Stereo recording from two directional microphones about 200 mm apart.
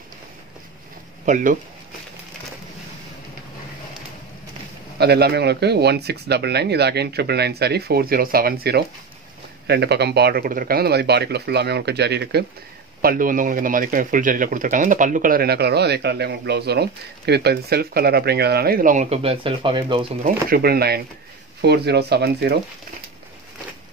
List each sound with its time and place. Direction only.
1.2 s speech: 40° right (ahead or behind)
4.9 s speech: 55° right (ahead or behind)
13.0 s speech: 45° right (ahead or behind); by 20.1 s 25° right (ahead or behind)
20.2 s speech: 50° right (ahead or behind)